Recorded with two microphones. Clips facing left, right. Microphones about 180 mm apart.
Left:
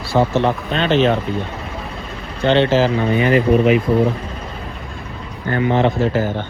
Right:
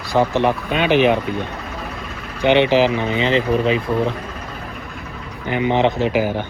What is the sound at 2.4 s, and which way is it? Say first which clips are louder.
Speech: even; 15° right (ahead or behind).